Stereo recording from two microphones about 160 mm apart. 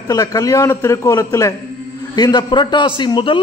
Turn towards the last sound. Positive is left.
turn(degrees=30)  # may be behind; listen again after turning